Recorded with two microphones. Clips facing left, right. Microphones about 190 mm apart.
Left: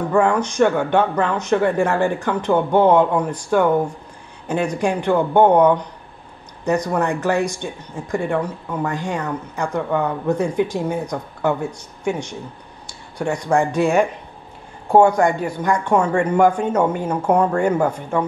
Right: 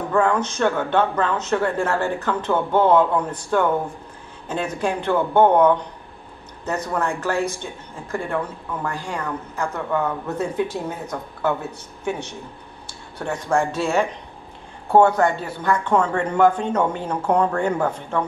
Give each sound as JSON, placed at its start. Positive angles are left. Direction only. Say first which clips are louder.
{"t": 0.1, "sound": "speech", "louder": "left 2 dB", "side_deg": 15}